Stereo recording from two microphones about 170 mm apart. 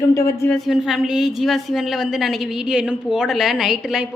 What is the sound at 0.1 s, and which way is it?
Speech, 20° left (ahead or behind).